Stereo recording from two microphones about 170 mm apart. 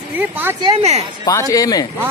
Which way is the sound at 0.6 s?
35° right (ahead or behind).